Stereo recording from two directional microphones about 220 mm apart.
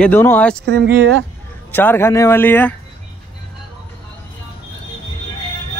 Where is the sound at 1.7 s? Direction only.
10° left (ahead or behind).